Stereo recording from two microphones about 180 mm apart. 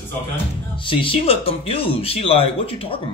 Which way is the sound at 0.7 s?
30° left (ahead or behind).